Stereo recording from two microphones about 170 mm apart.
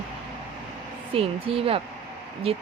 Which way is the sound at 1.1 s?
35° right (ahead or behind).